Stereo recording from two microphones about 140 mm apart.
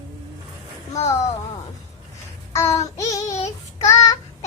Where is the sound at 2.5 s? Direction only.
20° left (ahead or behind).